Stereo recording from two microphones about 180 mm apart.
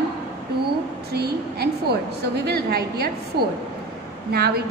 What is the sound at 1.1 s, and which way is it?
A woman's voice, 65° right (ahead or behind).